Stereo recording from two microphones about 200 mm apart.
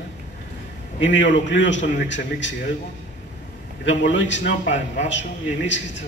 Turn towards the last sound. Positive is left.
turn(degrees=65)  # may be behind; listen again after turning